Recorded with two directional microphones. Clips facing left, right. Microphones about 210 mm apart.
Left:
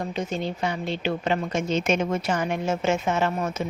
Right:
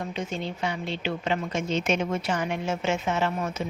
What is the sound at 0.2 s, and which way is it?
A woman's voice, 40° left (ahead or behind).